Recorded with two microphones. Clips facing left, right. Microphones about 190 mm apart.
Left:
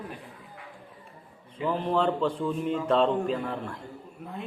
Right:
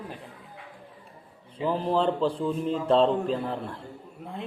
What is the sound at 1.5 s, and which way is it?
Speech, 35° right (ahead or behind).